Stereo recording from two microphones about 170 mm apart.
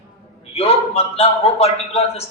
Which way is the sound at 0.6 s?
35° left (ahead or behind).